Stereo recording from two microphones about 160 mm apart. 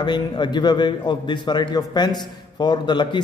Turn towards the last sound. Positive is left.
turn(degrees=30)  # may be behind; listen again after turning